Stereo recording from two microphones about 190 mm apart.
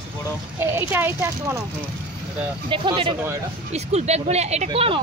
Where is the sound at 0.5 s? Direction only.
15° right (ahead or behind).